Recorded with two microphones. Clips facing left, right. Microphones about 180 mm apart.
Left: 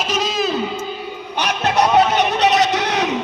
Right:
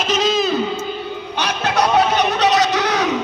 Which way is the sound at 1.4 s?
20° left (ahead or behind).